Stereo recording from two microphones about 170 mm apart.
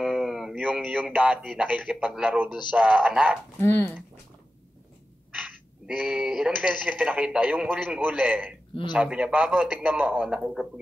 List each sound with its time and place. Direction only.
0.0 s a man's voice: 5° right (ahead or behind)
3.6 s speech: 10° left (ahead or behind)
5.3 s a man's voice: 10° right (ahead or behind)